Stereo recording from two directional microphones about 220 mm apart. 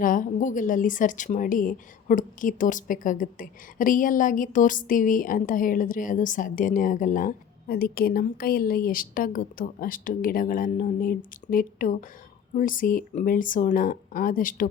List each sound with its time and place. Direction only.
0.0 s speech: 40° left (ahead or behind)